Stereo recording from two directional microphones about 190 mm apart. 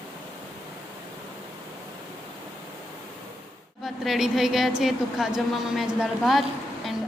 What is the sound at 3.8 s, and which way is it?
A woman's voice, centre (ahead or behind).